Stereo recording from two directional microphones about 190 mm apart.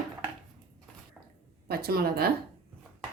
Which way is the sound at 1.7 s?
55° right (ahead or behind).